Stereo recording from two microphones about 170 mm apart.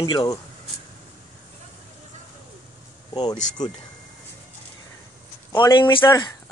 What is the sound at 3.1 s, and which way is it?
Speech, 25° left (ahead or behind).